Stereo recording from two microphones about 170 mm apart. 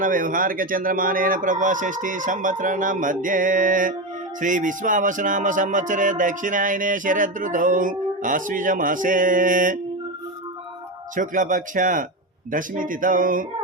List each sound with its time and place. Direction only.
0.0 s speech: 55° right (ahead or behind)
11.1 s speech: 50° right (ahead or behind)